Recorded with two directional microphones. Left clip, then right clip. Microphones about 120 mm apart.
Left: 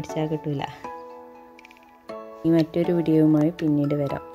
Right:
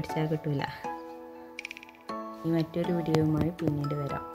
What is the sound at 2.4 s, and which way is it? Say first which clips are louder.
Speech: left 9 dB; 90° left.